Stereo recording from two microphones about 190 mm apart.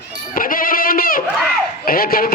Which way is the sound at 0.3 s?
45° left (ahead or behind).